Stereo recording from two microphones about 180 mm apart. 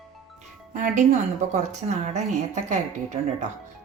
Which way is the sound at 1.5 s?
40° right (ahead or behind).